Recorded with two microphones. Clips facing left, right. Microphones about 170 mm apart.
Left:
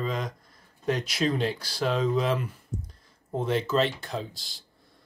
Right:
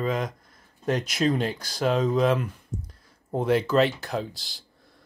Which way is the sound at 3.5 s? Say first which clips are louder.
Right 4 dB; 5° right (ahead or behind).